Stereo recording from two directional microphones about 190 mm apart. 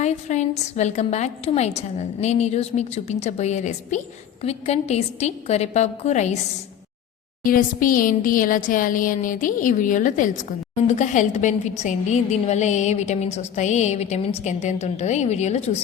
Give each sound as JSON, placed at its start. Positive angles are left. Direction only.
{"t": 0.0, "sound": "a woman's voice", "side_deg": 35}
{"t": 7.4, "sound": "a woman's voice", "side_deg": 45}